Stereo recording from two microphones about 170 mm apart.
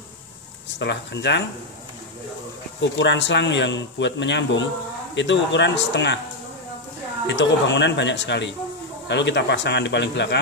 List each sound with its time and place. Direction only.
0.7 s speech: 90° left
3.0 s a man's voice: 90° left
7.2 s a man's voice: 90° left